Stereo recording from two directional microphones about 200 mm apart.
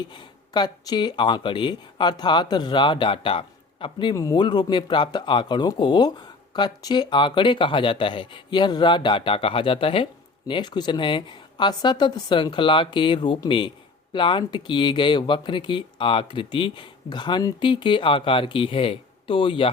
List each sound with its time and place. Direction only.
0.1 s speech: 20° left (ahead or behind)